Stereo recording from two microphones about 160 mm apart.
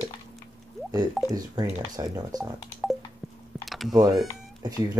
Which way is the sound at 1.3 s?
25° right (ahead or behind).